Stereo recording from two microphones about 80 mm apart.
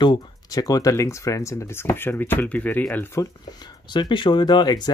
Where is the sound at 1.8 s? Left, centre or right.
Left.